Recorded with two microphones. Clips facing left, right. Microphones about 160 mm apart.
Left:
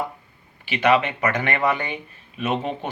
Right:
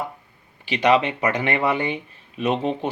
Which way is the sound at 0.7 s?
35° right (ahead or behind).